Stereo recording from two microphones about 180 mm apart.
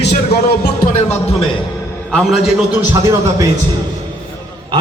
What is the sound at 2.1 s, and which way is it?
Speech, centre (ahead or behind).